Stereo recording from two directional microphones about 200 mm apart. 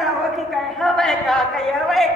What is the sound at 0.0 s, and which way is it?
A woman's voice, centre (ahead or behind).